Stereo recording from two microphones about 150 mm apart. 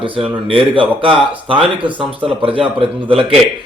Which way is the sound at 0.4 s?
35° right (ahead or behind).